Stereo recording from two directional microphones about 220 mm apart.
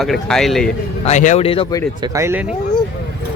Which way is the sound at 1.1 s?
30° left (ahead or behind).